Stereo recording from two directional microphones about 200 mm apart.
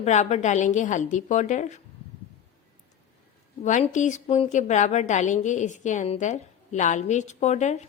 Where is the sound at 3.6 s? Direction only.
35° left (ahead or behind).